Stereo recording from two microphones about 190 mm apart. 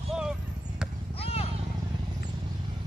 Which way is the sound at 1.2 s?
30° left (ahead or behind).